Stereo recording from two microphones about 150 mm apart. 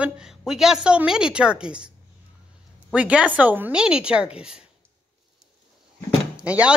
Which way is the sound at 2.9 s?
5° right (ahead or behind).